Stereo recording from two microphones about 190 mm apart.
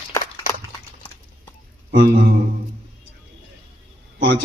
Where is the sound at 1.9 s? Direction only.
55° right (ahead or behind).